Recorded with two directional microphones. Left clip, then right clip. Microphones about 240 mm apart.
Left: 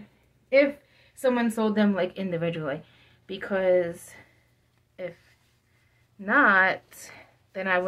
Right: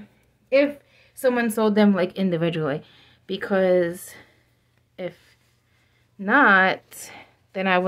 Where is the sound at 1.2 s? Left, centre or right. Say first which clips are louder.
Right 4 dB; right.